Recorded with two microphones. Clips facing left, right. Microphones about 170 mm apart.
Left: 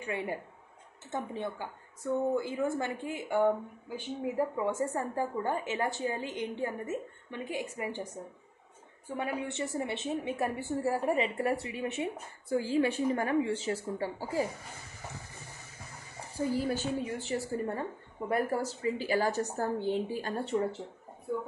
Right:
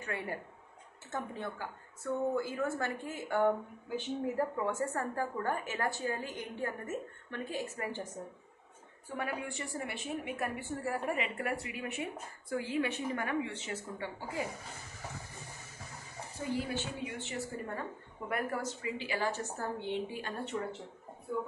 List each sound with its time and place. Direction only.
0.0 s a woman's voice: 20° left (ahead or behind); by 14.4 s 35° left (ahead or behind)
16.3 s a woman's voice: 40° left (ahead or behind)